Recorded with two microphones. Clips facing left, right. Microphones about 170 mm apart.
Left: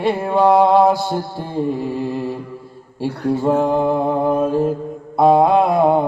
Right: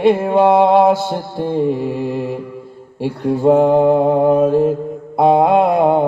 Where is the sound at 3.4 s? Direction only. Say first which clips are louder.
Right 7 dB; 20° right (ahead or behind).